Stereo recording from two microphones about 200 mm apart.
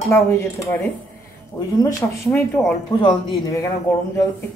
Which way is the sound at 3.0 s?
25° left (ahead or behind).